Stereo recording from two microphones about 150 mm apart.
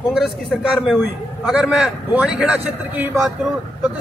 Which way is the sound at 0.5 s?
5° right (ahead or behind).